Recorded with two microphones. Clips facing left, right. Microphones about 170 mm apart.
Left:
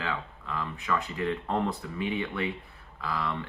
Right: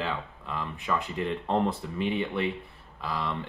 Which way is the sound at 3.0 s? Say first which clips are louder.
Even; 25° right (ahead or behind).